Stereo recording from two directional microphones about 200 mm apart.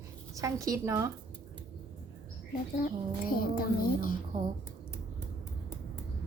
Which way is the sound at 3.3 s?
45° left (ahead or behind).